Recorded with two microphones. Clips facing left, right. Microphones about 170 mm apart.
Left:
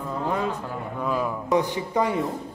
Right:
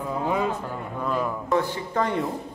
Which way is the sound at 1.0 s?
5° left (ahead or behind).